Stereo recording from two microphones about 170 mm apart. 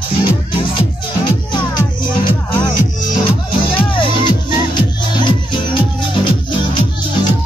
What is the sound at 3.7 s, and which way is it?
Music, 30° left (ahead or behind).